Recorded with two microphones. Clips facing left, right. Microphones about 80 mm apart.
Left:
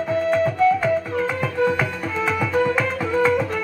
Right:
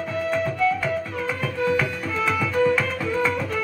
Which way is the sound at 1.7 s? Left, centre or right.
Left.